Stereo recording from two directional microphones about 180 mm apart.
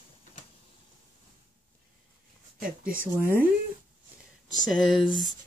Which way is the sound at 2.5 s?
50° right (ahead or behind).